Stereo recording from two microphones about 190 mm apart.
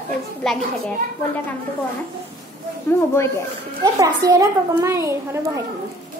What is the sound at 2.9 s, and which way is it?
Speech, 15° left (ahead or behind).